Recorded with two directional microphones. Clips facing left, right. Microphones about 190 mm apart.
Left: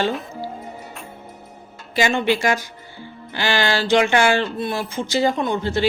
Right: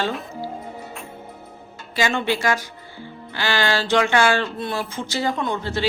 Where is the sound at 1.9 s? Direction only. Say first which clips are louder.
Left 3 dB; 15° left (ahead or behind).